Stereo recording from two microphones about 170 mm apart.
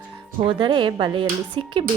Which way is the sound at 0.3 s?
30° right (ahead or behind).